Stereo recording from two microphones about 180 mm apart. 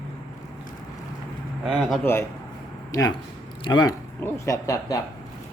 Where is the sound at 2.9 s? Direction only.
20° left (ahead or behind).